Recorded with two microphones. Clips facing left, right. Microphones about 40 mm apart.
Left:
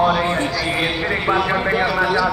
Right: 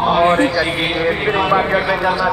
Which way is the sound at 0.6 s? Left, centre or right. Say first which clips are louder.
Right 3 dB; centre.